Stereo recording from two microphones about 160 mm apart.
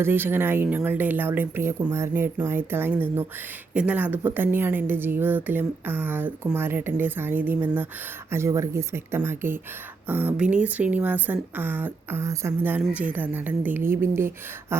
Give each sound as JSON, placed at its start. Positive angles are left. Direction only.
{"t": 0.0, "sound": "a woman's voice", "side_deg": -15}